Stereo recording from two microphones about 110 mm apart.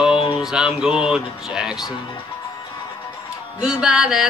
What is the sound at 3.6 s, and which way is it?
Music, 5° right (ahead or behind).